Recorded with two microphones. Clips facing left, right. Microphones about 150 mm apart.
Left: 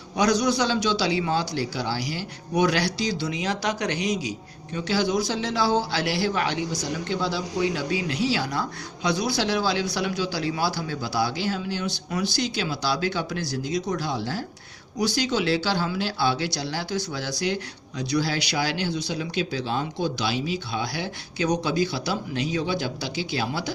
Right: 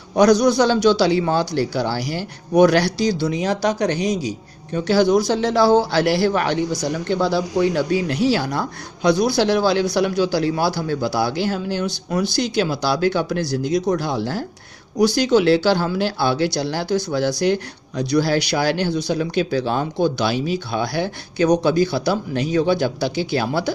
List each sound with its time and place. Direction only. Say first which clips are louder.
0.2 s speech: right 8 dB; 55° right (ahead or behind)
3.2 s a man's voice: right 7 dB; 40° right (ahead or behind)
4.9 s a man's voice: right 8 dB; 50° right (ahead or behind)